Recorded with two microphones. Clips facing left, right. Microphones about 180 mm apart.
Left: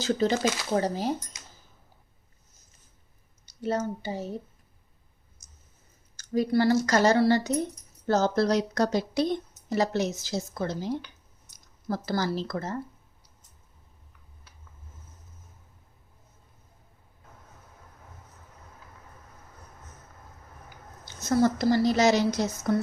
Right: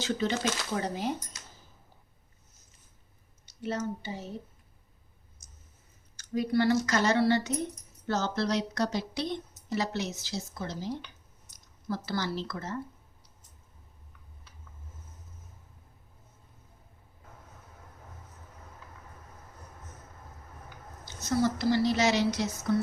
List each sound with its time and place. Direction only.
0.0 s speech: 40° left (ahead or behind)
3.4 s speech: 40° left (ahead or behind)
6.1 s a woman's voice: 40° left (ahead or behind); by 10.9 s 55° left (ahead or behind)
11.9 s speech: 40° left (ahead or behind)
21.0 s a woman's voice: 50° left (ahead or behind)